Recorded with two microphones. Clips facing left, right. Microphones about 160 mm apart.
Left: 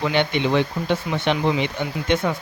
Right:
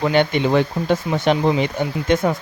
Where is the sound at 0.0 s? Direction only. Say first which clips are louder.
Right 4 dB; 45° right (ahead or behind).